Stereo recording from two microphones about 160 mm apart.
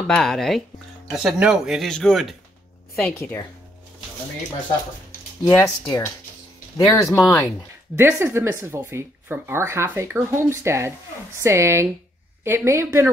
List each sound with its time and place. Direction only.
0.0 s speech: 5° left (ahead or behind)
3.2 s speech: 15° left (ahead or behind)
5.5 s speech: 20° left (ahead or behind)
7.2 s speech: 5° left (ahead or behind)
7.4 s speech: 15° right (ahead or behind)